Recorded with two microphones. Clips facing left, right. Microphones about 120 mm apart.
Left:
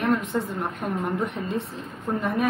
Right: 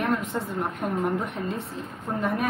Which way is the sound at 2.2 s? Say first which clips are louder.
Left 1 dB; centre (ahead or behind).